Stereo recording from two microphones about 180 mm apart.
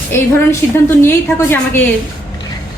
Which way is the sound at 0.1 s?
15° left (ahead or behind).